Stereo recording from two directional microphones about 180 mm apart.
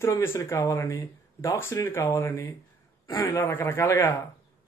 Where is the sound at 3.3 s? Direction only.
10° left (ahead or behind).